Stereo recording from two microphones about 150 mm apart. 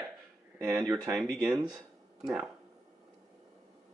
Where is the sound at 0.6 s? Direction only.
15° right (ahead or behind).